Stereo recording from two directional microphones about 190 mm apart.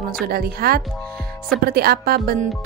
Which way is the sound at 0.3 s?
50° right (ahead or behind).